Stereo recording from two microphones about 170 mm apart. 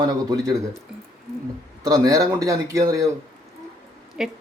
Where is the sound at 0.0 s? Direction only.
25° right (ahead or behind).